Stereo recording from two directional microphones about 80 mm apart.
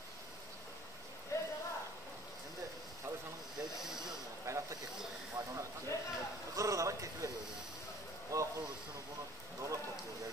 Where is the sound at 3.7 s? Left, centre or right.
Centre.